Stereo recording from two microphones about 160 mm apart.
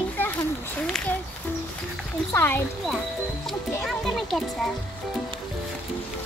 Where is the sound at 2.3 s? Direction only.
15° left (ahead or behind).